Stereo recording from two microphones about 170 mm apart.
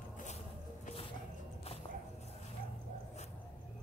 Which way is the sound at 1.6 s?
35° left (ahead or behind).